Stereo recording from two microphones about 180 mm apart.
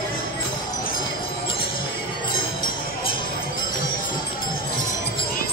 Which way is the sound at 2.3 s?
25° left (ahead or behind).